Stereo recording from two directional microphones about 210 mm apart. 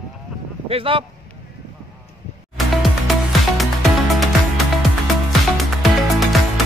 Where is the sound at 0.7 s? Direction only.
25° right (ahead or behind).